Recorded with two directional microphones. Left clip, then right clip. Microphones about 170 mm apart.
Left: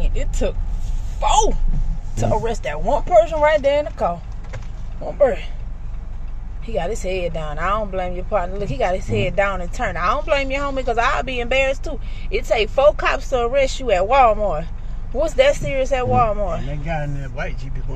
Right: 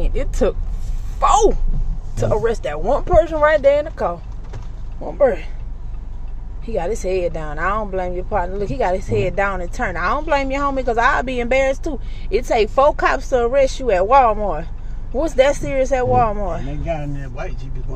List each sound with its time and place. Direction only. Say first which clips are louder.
0.0 s speech: right 5 dB; 30° right (ahead or behind)
2.4 s speech: right 3 dB; 15° right (ahead or behind)
6.6 s speech: right 2 dB; 15° right (ahead or behind)